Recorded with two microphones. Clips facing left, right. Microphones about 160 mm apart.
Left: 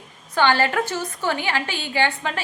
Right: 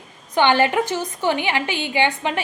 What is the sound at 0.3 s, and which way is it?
A woman's voice, 15° right (ahead or behind).